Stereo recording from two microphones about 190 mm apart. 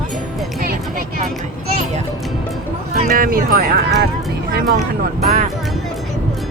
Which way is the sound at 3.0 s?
50° right (ahead or behind).